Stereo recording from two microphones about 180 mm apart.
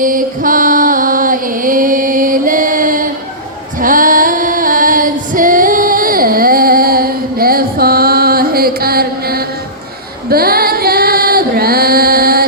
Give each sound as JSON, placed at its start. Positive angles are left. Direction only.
{"t": 0.0, "sound": "music", "side_deg": -50}
{"t": 3.8, "sound": "female singing", "side_deg": -50}